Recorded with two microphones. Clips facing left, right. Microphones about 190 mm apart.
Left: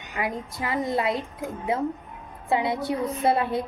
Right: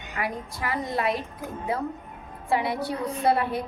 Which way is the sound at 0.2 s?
20° left (ahead or behind).